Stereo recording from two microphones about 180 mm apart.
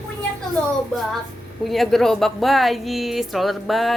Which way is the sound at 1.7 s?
Centre (ahead or behind).